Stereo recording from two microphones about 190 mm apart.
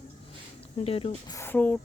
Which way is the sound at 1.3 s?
10° left (ahead or behind).